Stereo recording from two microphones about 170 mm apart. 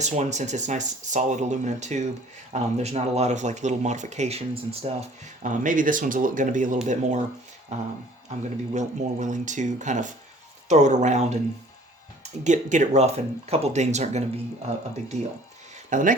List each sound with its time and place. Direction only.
0.0 s speech: 45° right (ahead or behind)
8.3 s speech: 45° right (ahead or behind)
12.4 s speech: 45° right (ahead or behind)
15.9 s speech: 50° right (ahead or behind)